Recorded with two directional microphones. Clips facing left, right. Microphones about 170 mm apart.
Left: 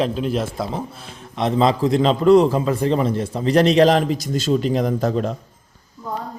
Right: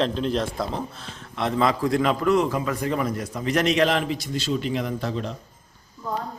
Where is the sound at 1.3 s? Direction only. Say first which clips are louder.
Left 5 dB; 20° left (ahead or behind); by 5.3 s 45° left (ahead or behind).